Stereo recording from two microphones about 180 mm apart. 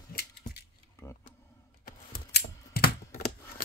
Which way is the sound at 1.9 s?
55° left (ahead or behind).